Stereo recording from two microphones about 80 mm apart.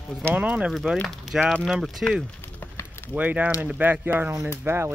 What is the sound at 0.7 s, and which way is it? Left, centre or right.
Speech, centre.